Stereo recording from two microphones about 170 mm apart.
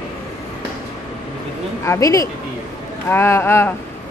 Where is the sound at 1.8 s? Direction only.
20° left (ahead or behind).